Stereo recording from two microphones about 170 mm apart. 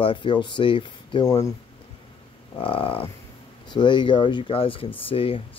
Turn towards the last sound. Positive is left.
turn(degrees=35)  # may be behind; listen again after turning